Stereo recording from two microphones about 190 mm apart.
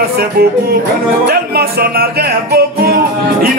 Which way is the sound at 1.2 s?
55° right (ahead or behind).